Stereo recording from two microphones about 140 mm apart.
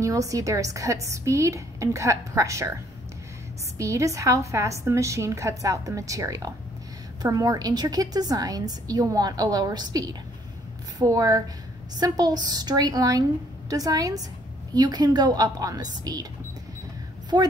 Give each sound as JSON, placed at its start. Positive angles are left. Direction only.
{"t": 0.0, "sound": "a woman's voice", "side_deg": -25}
{"t": 3.7, "sound": "a woman's voice", "side_deg": -25}